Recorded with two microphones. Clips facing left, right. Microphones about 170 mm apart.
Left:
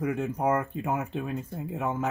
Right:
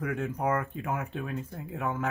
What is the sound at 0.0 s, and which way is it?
Speech, 20° left (ahead or behind).